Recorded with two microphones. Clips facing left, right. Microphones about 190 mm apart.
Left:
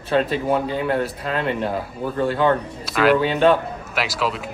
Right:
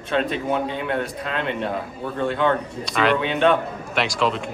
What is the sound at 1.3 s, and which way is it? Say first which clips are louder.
Speech: left 4 dB; 35° left (ahead or behind).